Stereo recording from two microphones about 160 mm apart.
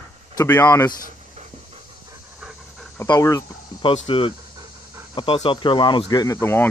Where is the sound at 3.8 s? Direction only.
35° left (ahead or behind).